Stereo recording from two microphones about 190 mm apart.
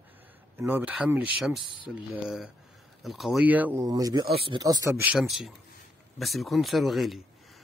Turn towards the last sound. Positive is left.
turn(degrees=0)  # may be behind; listen again after turning